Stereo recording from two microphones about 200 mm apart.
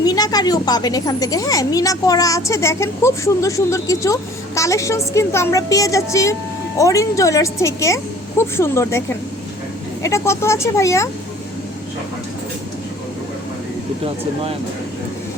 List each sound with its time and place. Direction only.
0.0 s a woman's voice: 20° left (ahead or behind)